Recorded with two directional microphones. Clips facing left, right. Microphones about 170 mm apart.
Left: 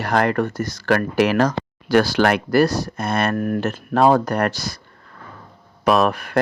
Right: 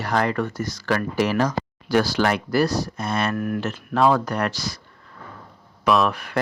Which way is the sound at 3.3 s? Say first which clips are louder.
Left 4 dB; 45° left (ahead or behind).